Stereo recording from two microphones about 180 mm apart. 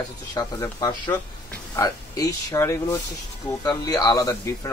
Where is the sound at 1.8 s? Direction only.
20° left (ahead or behind).